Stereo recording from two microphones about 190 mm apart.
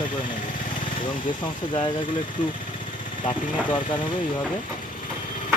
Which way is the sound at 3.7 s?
25° left (ahead or behind).